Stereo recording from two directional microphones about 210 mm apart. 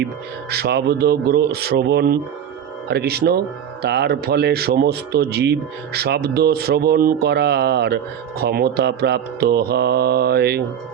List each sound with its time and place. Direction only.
0.5 s speech: 50° right (ahead or behind)